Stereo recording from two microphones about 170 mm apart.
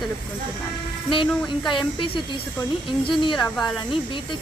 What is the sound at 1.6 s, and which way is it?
Speech, 30° left (ahead or behind).